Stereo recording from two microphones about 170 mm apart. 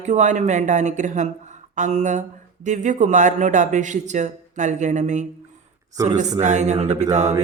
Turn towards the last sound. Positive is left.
turn(degrees=-40)  # may be behind; listen again after turning